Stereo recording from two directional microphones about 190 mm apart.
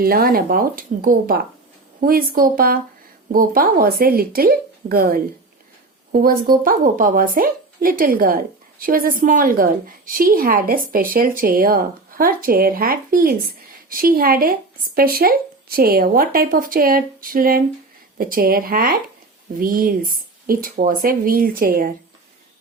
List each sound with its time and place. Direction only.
0.0 s a woman's voice: 50° right (ahead or behind)